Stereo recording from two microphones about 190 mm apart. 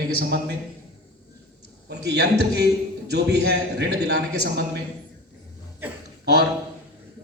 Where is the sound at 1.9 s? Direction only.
60° right (ahead or behind).